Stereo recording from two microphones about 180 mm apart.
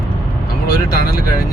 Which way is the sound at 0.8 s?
55° left (ahead or behind).